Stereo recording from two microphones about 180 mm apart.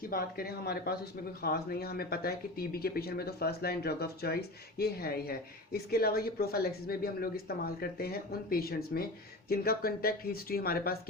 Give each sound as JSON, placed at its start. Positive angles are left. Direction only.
{"t": 0.1, "sound": "speech", "side_deg": 55}